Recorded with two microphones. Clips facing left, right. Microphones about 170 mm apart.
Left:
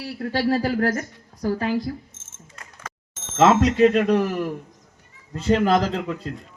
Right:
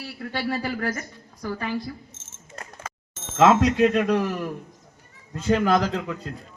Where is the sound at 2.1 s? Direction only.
50° left (ahead or behind).